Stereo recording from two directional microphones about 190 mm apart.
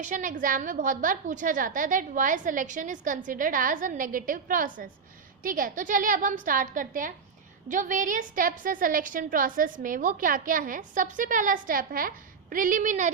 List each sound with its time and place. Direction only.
0.1 s a woman's voice: 45° right (ahead or behind)